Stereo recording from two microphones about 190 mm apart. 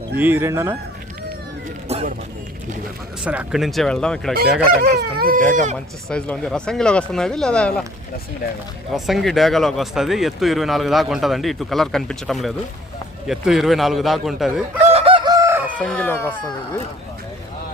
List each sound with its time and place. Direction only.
0.2 s speech: 10° right (ahead or behind)
1.9 s music: 35° right (ahead or behind)
3.2 s speech: 5° right (ahead or behind)
4.7 s speech: 50° right (ahead or behind)
6.1 s speech: 5° left (ahead or behind)
8.9 s speech: centre (ahead or behind)
14.8 s chicken: 30° right (ahead or behind); by 15.7 s 15° right (ahead or behind)
15.8 s speech: 5° left (ahead or behind)